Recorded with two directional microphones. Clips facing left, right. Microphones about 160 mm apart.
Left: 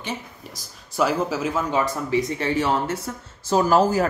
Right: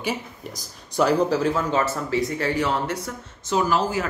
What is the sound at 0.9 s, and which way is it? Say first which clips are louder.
Speech: right 3 dB; 5° left (ahead or behind).